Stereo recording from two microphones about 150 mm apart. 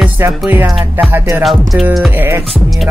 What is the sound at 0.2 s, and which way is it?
Music, 15° right (ahead or behind).